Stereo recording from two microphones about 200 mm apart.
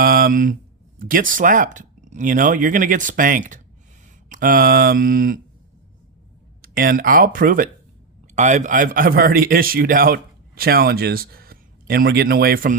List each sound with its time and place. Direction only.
0.0 s a man's voice: 45° right (ahead or behind)
6.6 s a man's voice: 45° right (ahead or behind)